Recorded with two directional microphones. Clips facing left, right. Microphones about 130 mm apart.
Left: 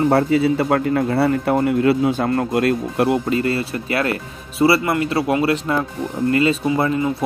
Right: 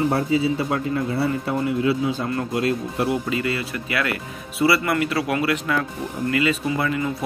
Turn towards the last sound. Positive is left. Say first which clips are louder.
# left 5 dB
turn(degrees=30)  # may be behind; listen again after turning